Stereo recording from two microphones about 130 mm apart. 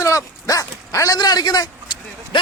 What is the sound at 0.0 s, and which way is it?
Dog, 25° left (ahead or behind).